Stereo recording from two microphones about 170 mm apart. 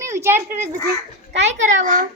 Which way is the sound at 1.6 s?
50° right (ahead or behind).